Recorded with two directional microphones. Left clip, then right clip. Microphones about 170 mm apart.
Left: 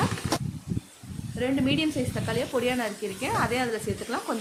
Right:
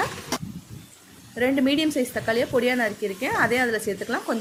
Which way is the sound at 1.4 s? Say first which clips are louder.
Right 4 dB; 45° right (ahead or behind).